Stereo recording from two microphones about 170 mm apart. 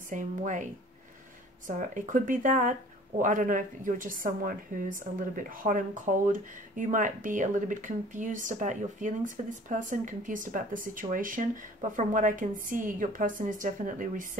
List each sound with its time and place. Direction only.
0.1 s speech: 45° right (ahead or behind)
1.7 s speech: 50° right (ahead or behind)